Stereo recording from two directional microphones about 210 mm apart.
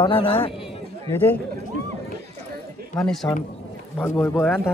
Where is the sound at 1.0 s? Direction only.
10° left (ahead or behind).